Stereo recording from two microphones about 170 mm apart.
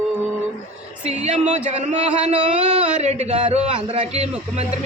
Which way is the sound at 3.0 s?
40° right (ahead or behind).